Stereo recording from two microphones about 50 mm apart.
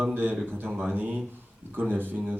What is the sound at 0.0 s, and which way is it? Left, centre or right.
A man's voice, right.